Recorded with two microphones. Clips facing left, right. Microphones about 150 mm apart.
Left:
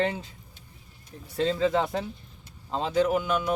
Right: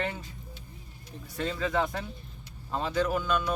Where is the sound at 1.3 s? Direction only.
25° left (ahead or behind).